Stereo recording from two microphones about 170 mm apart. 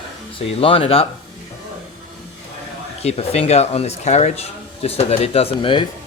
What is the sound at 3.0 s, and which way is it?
Speech, 40° left (ahead or behind).